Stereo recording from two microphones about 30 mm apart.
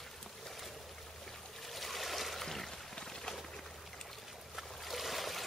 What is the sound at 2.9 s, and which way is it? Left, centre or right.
Pigeon, centre.